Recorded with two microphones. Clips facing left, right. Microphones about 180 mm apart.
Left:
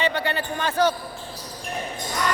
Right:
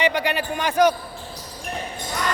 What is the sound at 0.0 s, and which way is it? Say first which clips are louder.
Speech: right 3 dB; 15° right (ahead or behind).